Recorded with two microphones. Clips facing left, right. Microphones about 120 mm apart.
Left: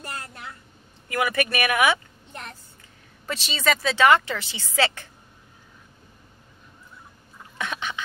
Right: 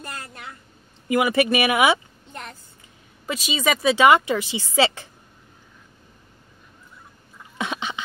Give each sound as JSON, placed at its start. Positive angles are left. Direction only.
{"t": 1.0, "sound": "speech", "side_deg": -20}
{"t": 3.3, "sound": "speech", "side_deg": -5}
{"t": 7.5, "sound": "duck", "side_deg": -20}